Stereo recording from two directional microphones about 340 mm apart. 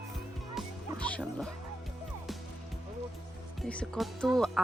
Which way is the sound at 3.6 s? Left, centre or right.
Centre.